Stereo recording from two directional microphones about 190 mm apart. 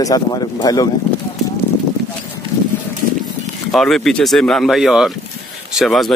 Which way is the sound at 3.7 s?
Centre (ahead or behind).